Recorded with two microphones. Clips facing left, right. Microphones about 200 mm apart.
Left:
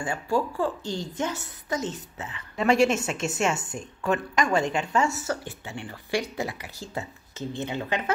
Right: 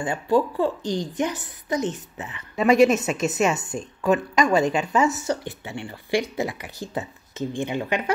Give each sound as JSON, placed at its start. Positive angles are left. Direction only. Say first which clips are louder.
{"t": 0.0, "sound": "a woman's voice", "louder": "right 5 dB", "side_deg": -20}
{"t": 2.7, "sound": "a woman's voice", "louder": "right 5 dB", "side_deg": 30}
{"t": 3.7, "sound": "a woman's voice", "louder": "right 5 dB", "side_deg": -20}